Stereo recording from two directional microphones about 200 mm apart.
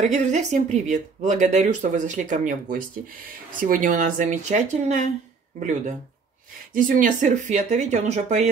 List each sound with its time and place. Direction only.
0.0 s speech: 35° right (ahead or behind)